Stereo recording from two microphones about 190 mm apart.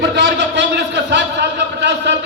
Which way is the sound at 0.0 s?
65° right (ahead or behind).